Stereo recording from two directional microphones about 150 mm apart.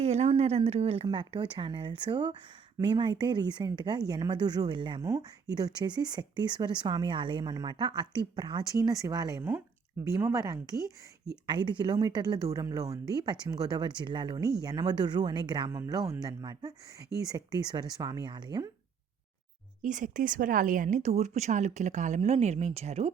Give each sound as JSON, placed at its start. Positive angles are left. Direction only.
{"t": 0.0, "sound": "a woman's voice", "side_deg": -45}
{"t": 19.8, "sound": "speech", "side_deg": -60}